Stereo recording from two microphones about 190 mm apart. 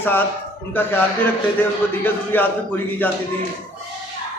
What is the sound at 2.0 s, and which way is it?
Speech, 10° left (ahead or behind).